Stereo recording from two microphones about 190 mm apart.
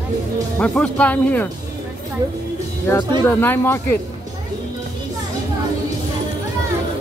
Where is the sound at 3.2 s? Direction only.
10° left (ahead or behind).